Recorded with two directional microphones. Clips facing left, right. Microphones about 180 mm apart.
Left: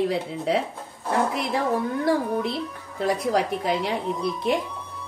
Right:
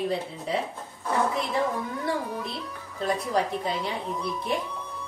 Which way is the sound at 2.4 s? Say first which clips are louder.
Left 7 dB; 90° left.